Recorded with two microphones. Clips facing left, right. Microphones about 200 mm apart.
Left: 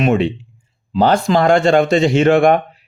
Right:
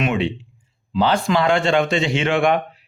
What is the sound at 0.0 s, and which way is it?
Speech, 45° left (ahead or behind).